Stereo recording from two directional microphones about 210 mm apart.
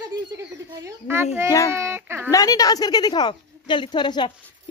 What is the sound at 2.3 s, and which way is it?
A woman's voice, 15° left (ahead or behind).